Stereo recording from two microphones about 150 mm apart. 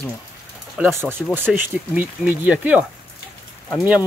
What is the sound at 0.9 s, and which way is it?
Speech, 15° right (ahead or behind).